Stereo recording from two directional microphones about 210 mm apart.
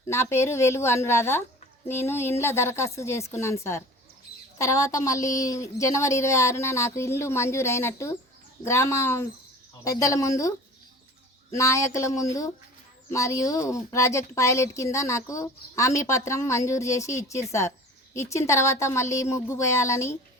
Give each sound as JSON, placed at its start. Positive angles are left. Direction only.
{"t": 0.1, "sound": "speech", "side_deg": 15}
{"t": 11.5, "sound": "speech", "side_deg": 15}